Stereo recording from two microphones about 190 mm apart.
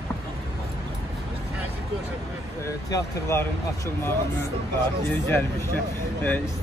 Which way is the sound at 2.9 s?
15° left (ahead or behind).